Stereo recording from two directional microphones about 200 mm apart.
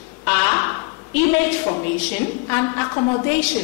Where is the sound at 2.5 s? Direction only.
15° left (ahead or behind).